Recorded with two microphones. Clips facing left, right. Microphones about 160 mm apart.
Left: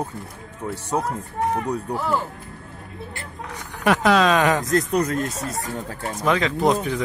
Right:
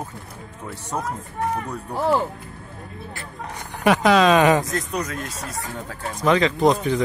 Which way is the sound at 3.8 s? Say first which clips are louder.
Right 1 dB; centre (ahead or behind).